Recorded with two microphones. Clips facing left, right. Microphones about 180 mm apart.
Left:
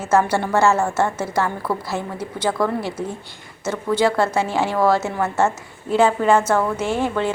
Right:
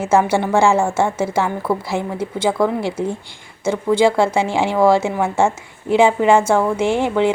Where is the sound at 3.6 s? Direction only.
10° right (ahead or behind).